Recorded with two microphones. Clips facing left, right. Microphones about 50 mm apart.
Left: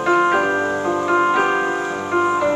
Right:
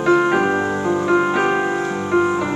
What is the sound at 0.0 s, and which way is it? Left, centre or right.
Music, centre.